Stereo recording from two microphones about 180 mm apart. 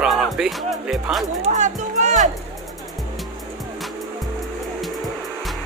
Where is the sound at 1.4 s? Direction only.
40° right (ahead or behind).